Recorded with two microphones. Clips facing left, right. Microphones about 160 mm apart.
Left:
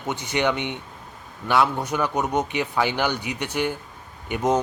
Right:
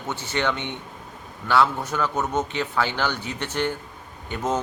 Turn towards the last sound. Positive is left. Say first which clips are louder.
# left 4 dB
turn(degrees=15)  # may be behind; listen again after turning